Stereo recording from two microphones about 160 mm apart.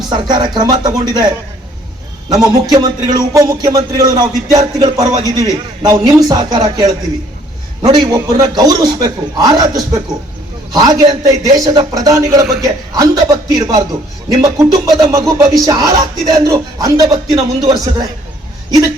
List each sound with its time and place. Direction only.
0.1 s a man's voice: 25° right (ahead or behind)
2.3 s a man's voice: 25° right (ahead or behind)